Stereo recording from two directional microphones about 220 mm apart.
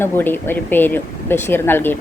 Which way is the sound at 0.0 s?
10° left (ahead or behind).